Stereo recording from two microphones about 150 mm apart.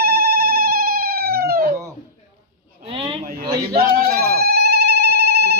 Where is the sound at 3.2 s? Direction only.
75° right (ahead or behind).